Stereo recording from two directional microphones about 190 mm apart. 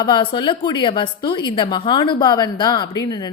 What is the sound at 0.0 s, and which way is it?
A woman's voice, 25° left (ahead or behind).